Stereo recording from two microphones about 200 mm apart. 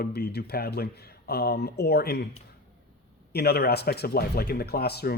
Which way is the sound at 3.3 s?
55° left (ahead or behind).